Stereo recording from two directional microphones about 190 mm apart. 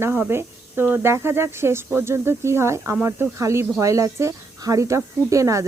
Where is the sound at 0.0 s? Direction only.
10° right (ahead or behind).